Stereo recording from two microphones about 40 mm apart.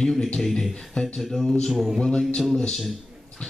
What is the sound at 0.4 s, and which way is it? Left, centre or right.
Speech, centre.